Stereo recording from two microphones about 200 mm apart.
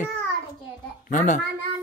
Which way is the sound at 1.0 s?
40° left (ahead or behind).